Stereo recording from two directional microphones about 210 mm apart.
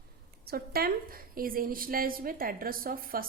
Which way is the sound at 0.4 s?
45° right (ahead or behind).